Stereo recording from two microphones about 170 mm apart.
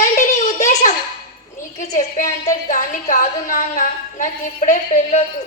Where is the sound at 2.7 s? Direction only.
50° left (ahead or behind).